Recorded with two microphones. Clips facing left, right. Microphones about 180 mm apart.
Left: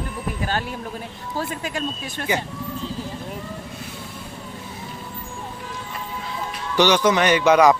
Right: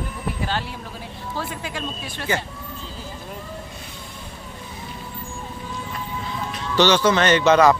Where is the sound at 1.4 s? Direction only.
45° left (ahead or behind).